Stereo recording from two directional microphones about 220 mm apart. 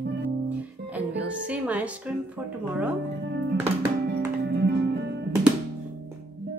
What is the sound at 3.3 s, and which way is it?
Music, 50° right (ahead or behind).